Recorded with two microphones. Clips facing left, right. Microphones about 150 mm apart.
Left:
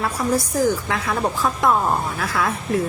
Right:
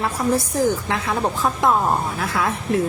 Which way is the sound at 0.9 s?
25° right (ahead or behind).